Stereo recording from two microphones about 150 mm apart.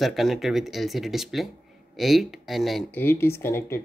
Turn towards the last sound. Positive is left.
turn(degrees=15)  # may be behind; listen again after turning